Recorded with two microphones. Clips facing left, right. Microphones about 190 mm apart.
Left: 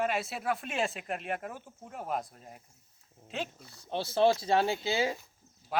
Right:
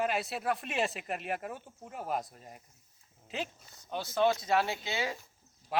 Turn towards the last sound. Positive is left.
turn(degrees=0)  # may be behind; listen again after turning